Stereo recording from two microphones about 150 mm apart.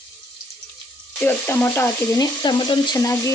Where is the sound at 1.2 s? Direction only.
15° left (ahead or behind).